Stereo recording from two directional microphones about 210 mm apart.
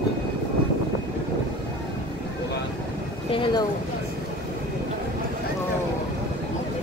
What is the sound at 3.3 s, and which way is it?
Speech, 25° left (ahead or behind).